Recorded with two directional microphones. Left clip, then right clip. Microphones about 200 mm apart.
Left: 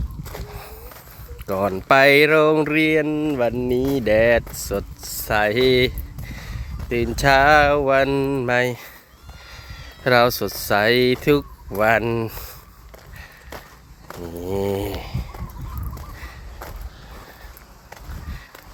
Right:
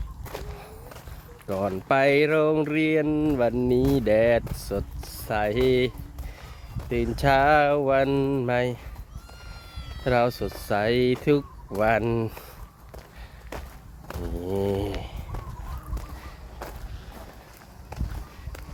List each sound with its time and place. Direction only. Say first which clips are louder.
0.3 s walk: left 2 dB; 15° left (ahead or behind)
1.5 s speech: left 7 dB; 20° left (ahead or behind)
10.0 s speech: left 7 dB; 25° left (ahead or behind)
13.5 s a sound: left 1 dB; 15° left (ahead or behind)
14.1 s speech: left 3 dB; 10° left (ahead or behind)